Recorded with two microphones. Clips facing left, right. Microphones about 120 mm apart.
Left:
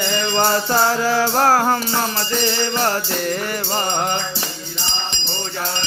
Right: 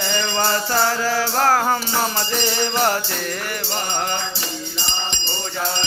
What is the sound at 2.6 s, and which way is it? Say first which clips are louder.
Music: even; 10° right (ahead or behind).